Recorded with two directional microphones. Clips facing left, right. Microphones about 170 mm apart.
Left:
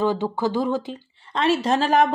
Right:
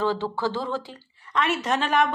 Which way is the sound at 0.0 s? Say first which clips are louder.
Left 3 dB; 15° left (ahead or behind).